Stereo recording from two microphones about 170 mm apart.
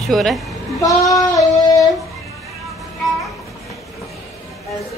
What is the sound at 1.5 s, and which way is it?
Child singing, 20° left (ahead or behind).